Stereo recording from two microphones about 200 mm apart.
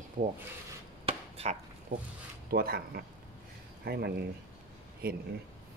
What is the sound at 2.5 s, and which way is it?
Speech, 50° right (ahead or behind).